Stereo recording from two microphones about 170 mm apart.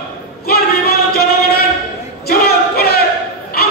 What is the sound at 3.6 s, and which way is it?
Dog, 65° left (ahead or behind).